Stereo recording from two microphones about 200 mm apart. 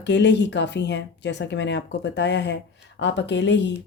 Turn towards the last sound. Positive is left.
turn(degrees=65)  # may be behind; listen again after turning